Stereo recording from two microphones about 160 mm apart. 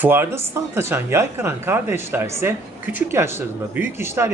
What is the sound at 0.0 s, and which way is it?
Speech, 15° right (ahead or behind).